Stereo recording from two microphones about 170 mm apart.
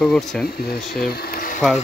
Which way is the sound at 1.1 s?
65° left (ahead or behind).